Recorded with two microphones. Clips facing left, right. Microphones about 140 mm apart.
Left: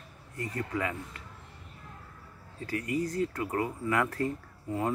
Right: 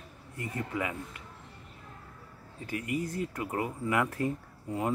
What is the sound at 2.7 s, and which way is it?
A man's voice, 20° right (ahead or behind).